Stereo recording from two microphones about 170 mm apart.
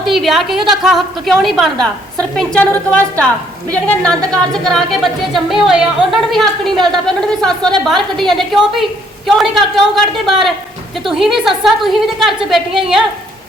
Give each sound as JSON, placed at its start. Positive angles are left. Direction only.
{"t": 0.0, "sound": "a woman's voice", "side_deg": 0}